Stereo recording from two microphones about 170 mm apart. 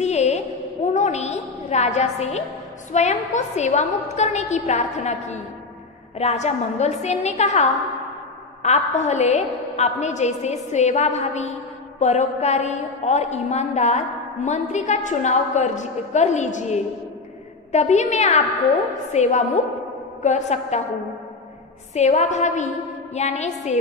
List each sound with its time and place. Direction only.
0.0 s a sound: 40° left (ahead or behind)
2.9 s a woman's voice: 45° left (ahead or behind)
8.6 s a woman's voice: 40° left (ahead or behind)
21.9 s a woman's voice: 40° left (ahead or behind)